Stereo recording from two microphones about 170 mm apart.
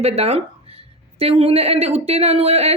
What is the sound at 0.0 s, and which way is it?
A woman's voice, 35° right (ahead or behind).